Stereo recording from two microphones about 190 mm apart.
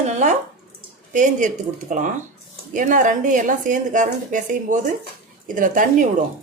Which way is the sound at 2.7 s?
40° right (ahead or behind).